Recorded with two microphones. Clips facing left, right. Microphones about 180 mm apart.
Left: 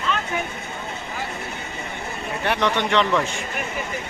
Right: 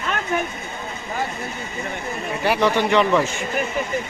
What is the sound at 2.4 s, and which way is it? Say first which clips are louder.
Speech: right 3 dB; 5° right (ahead or behind).